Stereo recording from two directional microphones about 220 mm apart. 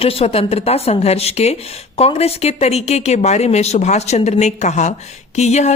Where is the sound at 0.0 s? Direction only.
25° left (ahead or behind).